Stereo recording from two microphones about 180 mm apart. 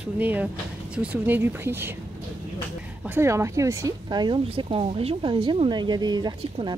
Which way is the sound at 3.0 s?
15° right (ahead or behind).